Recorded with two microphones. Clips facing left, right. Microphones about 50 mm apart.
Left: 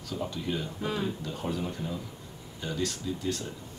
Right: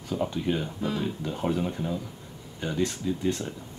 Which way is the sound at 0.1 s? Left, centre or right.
Right.